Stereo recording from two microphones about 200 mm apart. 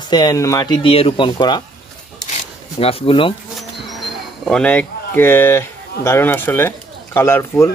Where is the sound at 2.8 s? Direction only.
30° left (ahead or behind).